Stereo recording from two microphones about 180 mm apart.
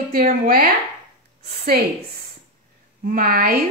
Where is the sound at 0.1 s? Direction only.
55° right (ahead or behind).